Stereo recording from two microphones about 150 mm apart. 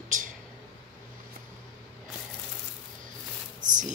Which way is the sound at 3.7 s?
60° right (ahead or behind).